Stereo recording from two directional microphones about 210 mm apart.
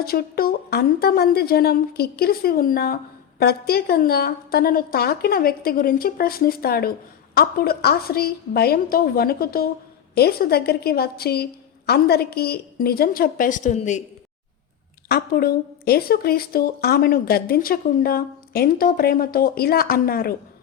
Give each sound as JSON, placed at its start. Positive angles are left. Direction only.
{"t": 0.0, "sound": "a woman's voice", "side_deg": 45}
{"t": 15.1, "sound": "a woman's voice", "side_deg": 45}